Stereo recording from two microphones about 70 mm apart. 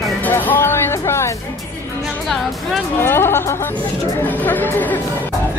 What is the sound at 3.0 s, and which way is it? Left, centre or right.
Speech, left.